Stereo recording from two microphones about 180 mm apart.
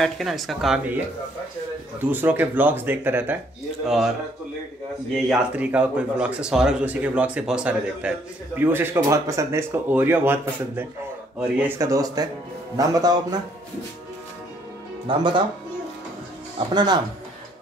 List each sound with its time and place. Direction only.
0.0 s speech: centre (ahead or behind)
2.0 s speech: 10° right (ahead or behind)
5.1 s speech: 5° right (ahead or behind)
11.8 s speech: 20° right (ahead or behind)
15.0 s speech: 25° right (ahead or behind)
16.5 s speech: 25° right (ahead or behind)